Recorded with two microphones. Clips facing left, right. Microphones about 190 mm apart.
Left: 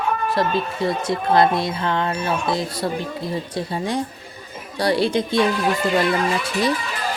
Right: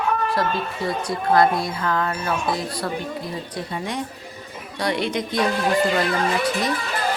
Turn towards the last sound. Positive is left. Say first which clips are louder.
# left 5 dB
turn(degrees=30)  # may be behind; listen again after turning